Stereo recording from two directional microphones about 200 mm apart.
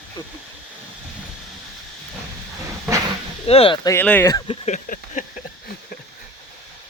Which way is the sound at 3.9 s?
10° left (ahead or behind).